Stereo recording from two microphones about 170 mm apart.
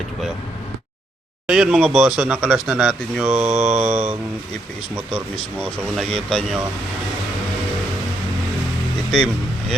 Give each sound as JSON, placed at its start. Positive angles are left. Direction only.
{"t": 1.5, "sound": "speech", "side_deg": -5}
{"t": 3.5, "sound": "mantra", "side_deg": -40}
{"t": 5.1, "sound": "speech", "side_deg": 5}